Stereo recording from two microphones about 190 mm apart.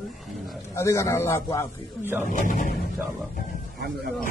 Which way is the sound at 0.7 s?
15° left (ahead or behind).